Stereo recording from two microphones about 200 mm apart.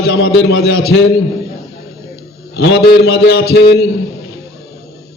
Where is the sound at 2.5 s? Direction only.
55° left (ahead or behind).